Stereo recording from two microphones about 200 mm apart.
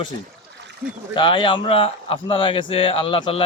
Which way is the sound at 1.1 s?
25° left (ahead or behind).